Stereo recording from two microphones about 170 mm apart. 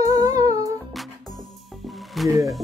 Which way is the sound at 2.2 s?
20° right (ahead or behind).